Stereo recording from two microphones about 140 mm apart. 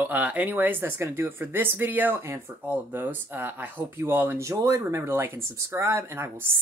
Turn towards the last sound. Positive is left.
turn(degrees=-20)  # may be behind; listen again after turning